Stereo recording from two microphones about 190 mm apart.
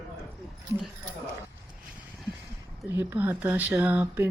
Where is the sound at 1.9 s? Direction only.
Centre (ahead or behind).